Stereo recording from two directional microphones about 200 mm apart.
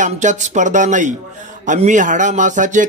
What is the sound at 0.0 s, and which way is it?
Speech, 35° right (ahead or behind).